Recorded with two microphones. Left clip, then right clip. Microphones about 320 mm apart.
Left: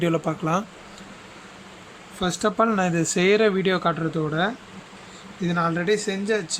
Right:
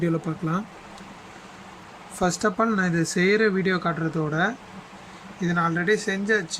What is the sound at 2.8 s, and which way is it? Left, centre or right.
Speech, left.